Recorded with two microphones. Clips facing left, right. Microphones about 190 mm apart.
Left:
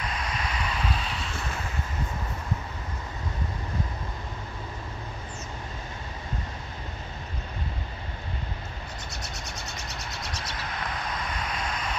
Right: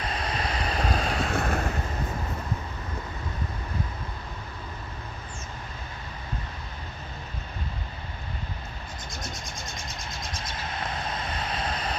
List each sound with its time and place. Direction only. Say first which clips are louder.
0.0 s waves: right 2 dB; 35° right (ahead or behind); by 1.7 s 55° right (ahead or behind)
9.1 s a sound: right 1 dB; 70° left (ahead or behind)
10.5 s vehicle: right 2 dB; 25° right (ahead or behind)